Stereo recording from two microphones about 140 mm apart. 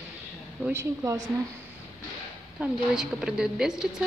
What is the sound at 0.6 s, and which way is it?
Speech, 20° right (ahead or behind).